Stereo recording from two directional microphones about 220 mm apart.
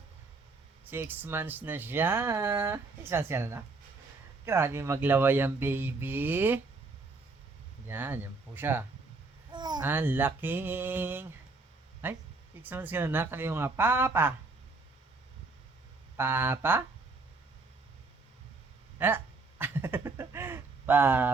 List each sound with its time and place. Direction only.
0.9 s speech: 10° right (ahead or behind)
7.9 s speech: 10° right (ahead or behind)
9.5 s babbling: 20° right (ahead or behind)
9.8 s speech: 10° right (ahead or behind)
16.1 s speech: 10° right (ahead or behind)
18.9 s speech: 10° right (ahead or behind)